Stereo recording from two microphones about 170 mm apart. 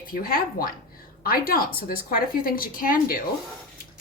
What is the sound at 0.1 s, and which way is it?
A woman's voice, 55° left (ahead or behind).